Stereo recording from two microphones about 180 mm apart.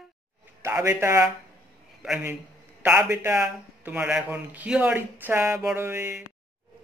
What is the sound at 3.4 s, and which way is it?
Speech, 5° right (ahead or behind).